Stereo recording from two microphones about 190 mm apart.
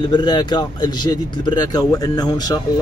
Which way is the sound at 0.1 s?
20° left (ahead or behind).